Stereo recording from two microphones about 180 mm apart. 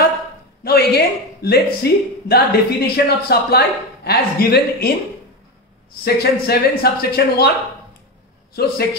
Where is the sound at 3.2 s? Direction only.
65° left (ahead or behind).